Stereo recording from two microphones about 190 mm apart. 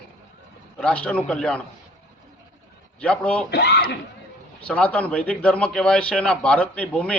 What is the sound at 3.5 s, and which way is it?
Speech, 60° left (ahead or behind).